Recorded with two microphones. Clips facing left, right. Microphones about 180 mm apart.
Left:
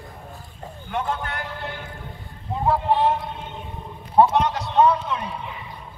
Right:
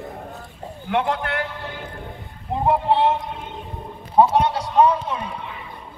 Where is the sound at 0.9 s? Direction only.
65° right (ahead or behind).